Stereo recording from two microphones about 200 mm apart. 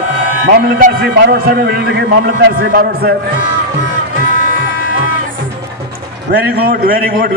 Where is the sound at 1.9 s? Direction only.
55° right (ahead or behind).